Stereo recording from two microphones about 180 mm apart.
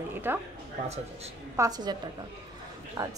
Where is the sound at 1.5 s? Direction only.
20° right (ahead or behind).